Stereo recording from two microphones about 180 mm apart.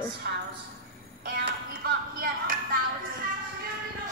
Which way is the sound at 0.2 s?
60° right (ahead or behind).